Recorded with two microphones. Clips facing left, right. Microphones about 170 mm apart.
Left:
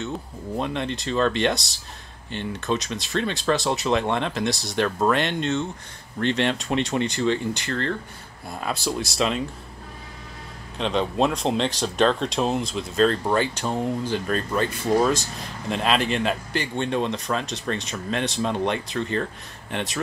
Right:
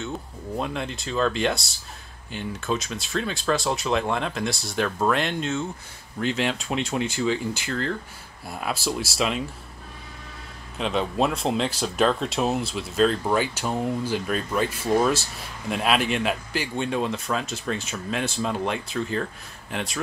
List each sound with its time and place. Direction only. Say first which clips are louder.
0.6 s speech: left 2 dB; centre (ahead or behind)
10.8 s speech: left 2 dB; 5° right (ahead or behind)